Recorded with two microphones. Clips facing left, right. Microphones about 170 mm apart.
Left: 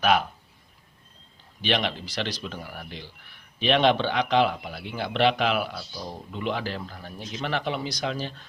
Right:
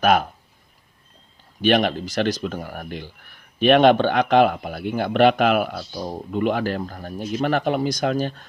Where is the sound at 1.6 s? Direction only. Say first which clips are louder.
Right 8 dB; 50° right (ahead or behind).